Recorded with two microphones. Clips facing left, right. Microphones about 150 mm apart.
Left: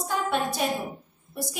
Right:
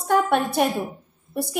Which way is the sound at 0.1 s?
55° right (ahead or behind).